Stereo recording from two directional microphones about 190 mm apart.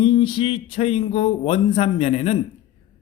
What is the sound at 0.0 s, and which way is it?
Speech, 25° left (ahead or behind).